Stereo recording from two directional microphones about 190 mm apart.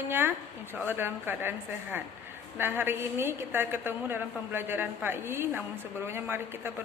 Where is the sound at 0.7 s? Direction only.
10° right (ahead or behind).